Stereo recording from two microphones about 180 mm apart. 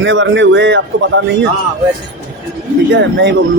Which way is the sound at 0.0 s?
90° right.